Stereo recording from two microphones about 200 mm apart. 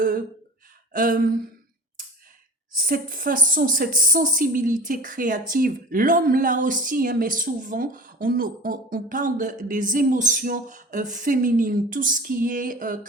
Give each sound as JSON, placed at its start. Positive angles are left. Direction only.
{"t": 0.9, "sound": "speech", "side_deg": -45}
{"t": 2.7, "sound": "speech", "side_deg": -45}